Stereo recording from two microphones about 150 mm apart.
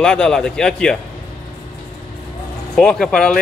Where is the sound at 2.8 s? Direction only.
5° left (ahead or behind).